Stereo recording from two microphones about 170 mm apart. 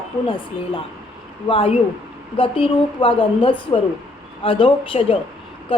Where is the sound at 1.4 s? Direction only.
35° left (ahead or behind).